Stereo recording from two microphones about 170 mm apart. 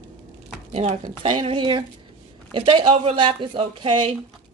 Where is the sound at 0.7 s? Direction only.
40° right (ahead or behind).